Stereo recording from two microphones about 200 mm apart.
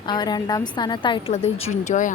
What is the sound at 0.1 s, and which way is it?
A woman's voice, 20° left (ahead or behind).